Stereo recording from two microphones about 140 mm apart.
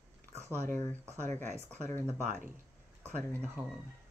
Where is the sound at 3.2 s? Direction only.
5° left (ahead or behind).